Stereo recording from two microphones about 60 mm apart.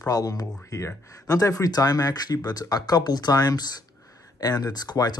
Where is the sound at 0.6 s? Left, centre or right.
Left.